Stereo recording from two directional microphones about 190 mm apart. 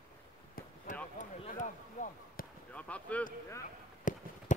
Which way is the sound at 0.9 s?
40° left (ahead or behind).